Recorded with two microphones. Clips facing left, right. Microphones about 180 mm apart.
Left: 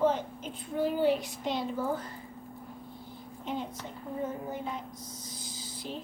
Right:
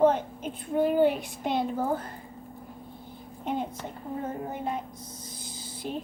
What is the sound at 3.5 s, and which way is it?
Speech, 55° right (ahead or behind).